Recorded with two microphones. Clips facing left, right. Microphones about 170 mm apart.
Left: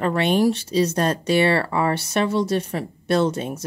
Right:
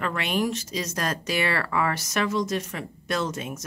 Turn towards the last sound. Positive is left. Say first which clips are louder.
# left 8 dB
turn(degrees=30)  # may be behind; listen again after turning